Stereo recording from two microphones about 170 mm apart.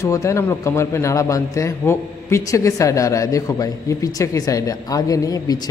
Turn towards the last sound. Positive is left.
turn(degrees=20)  # may be behind; listen again after turning